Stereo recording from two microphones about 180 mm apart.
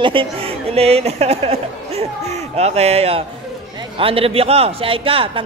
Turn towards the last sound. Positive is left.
turn(degrees=-30)  # may be behind; listen again after turning